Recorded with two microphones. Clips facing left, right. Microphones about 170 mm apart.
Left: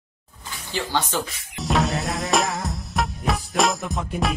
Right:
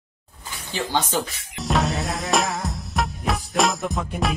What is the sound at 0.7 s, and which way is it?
Speech, 20° right (ahead or behind).